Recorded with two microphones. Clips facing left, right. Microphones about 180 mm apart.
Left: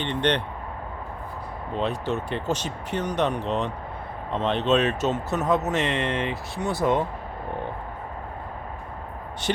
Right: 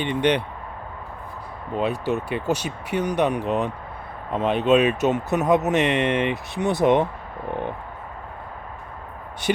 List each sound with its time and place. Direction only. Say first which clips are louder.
0.0 s speech: right 3 dB; 10° right (ahead or behind)
1.7 s speech: right 3 dB; 10° right (ahead or behind)